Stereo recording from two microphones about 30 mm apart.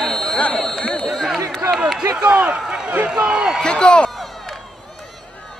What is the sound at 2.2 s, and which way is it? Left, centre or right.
Speech, right.